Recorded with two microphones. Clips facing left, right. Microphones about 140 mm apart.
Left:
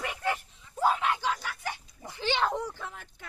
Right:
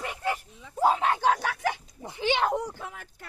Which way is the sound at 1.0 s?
45° right (ahead or behind).